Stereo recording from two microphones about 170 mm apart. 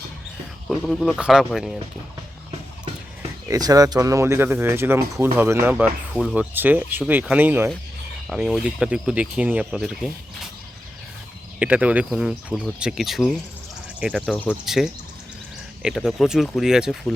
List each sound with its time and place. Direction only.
0.7 s speech: centre (ahead or behind)
3.5 s speech: 20° right (ahead or behind)
5.7 s speech: 5° right (ahead or behind)
11.6 s speech: 10° right (ahead or behind)